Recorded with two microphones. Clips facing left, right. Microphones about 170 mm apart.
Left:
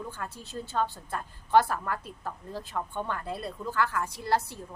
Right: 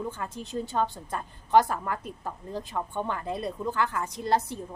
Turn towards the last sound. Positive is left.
turn(degrees=-20)  # may be behind; listen again after turning